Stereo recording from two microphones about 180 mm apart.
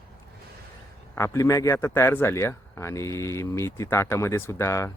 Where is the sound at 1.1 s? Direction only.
15° left (ahead or behind).